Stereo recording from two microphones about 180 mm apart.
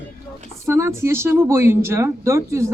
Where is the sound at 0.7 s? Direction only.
15° right (ahead or behind).